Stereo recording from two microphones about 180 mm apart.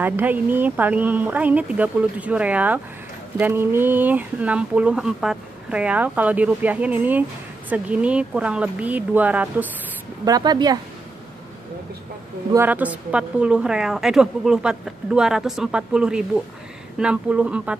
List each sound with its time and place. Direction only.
0.0 s speech: 10° right (ahead or behind)
10.2 s speech: 20° right (ahead or behind)
12.5 s a woman's voice: 10° right (ahead or behind)